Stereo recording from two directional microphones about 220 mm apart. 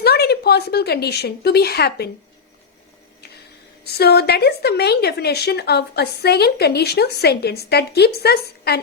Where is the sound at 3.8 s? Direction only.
45° left (ahead or behind).